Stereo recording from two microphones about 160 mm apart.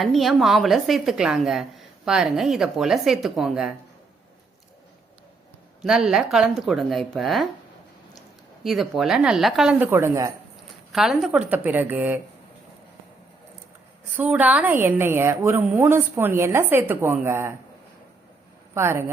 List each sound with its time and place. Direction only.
0.0 s speech: centre (ahead or behind)
5.8 s speech: 5° right (ahead or behind)
8.6 s speech: centre (ahead or behind); by 10.3 s 20° right (ahead or behind)
10.9 s a woman's voice: centre (ahead or behind)
14.2 s a woman's voice: 10° right (ahead or behind)
18.7 s a woman's voice: 15° right (ahead or behind)